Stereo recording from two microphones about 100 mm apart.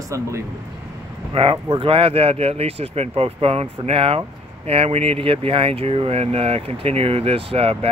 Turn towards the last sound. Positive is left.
turn(degrees=-75)  # may be behind; listen again after turning